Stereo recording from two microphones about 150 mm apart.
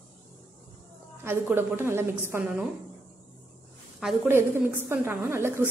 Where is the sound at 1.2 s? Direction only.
15° right (ahead or behind).